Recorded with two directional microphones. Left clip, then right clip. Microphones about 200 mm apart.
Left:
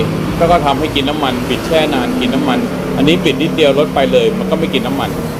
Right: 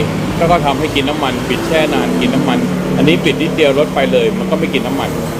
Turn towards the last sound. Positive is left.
turn(degrees=5)  # may be behind; listen again after turning